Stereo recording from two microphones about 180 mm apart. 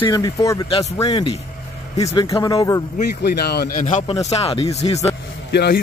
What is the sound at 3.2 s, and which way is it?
Speech, 60° left (ahead or behind).